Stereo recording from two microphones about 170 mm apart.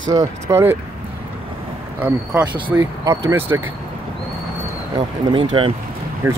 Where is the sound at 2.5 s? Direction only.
25° right (ahead or behind).